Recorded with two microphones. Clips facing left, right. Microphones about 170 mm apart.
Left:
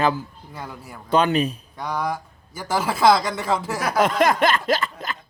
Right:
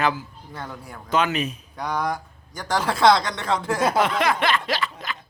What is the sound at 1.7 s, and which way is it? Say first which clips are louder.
Speech: right 1 dB; centre (ahead or behind).